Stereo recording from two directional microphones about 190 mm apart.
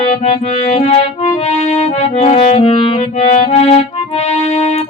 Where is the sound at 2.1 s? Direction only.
35° left (ahead or behind).